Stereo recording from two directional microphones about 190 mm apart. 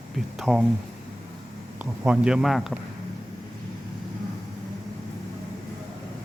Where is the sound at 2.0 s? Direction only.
5° right (ahead or behind).